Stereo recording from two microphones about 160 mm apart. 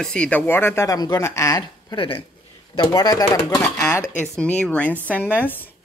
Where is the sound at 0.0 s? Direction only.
5° left (ahead or behind).